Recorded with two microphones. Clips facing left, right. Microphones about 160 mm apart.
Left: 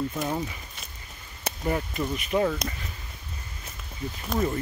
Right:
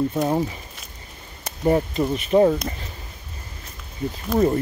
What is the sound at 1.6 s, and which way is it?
Speech, 30° right (ahead or behind).